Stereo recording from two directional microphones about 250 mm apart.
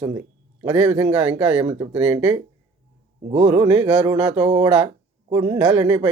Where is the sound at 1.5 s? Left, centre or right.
Right.